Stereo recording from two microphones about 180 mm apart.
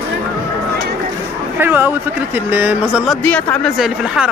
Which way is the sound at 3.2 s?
10° left (ahead or behind).